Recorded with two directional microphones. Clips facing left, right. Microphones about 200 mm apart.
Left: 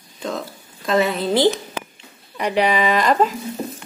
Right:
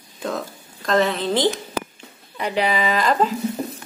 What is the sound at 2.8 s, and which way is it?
Speech, 40° left (ahead or behind).